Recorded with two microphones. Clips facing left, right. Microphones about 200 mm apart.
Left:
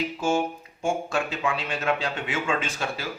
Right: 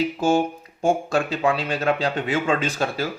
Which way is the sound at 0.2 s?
35° right (ahead or behind).